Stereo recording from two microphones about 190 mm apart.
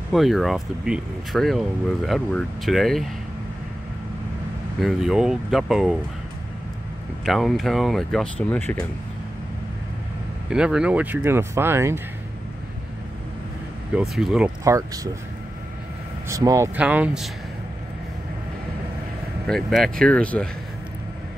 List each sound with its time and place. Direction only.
0.1 s speech: centre (ahead or behind)
4.7 s speech: centre (ahead or behind)
7.2 s speech: centre (ahead or behind)
10.5 s speech: 5° right (ahead or behind)
13.9 s speech: centre (ahead or behind)
14.6 s speech: 15° right (ahead or behind)
16.3 s speech: 15° right (ahead or behind)
19.4 s speech: centre (ahead or behind)